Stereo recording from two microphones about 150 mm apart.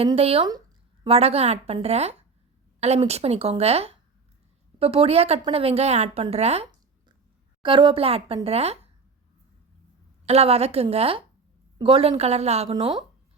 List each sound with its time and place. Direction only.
0.2 s a woman's voice: 40° right (ahead or behind)
7.6 s a woman's voice: 35° right (ahead or behind)
10.2 s a woman's voice: 45° right (ahead or behind)
12.7 s a woman's voice: 30° right (ahead or behind)